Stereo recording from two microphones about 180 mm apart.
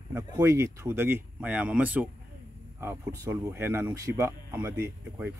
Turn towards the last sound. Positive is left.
turn(degrees=-10)  # may be behind; listen again after turning